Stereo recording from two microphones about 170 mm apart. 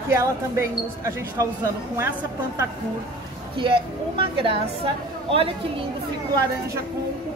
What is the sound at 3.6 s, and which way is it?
A woman's voice, 30° right (ahead or behind).